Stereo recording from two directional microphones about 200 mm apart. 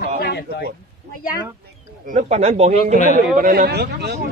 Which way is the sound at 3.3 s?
45° right (ahead or behind).